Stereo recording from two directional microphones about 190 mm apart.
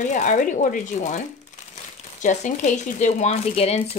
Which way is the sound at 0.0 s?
40° left (ahead or behind).